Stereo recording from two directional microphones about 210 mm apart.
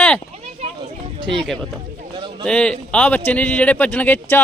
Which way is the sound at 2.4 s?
5° left (ahead or behind).